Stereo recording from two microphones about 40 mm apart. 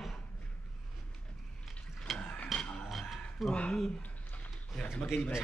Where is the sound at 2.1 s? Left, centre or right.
Centre.